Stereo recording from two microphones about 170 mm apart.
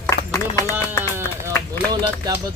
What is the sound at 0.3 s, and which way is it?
Music, 20° left (ahead or behind).